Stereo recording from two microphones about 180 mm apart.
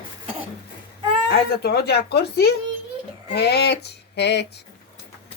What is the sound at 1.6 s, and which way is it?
Speech, 60° left (ahead or behind).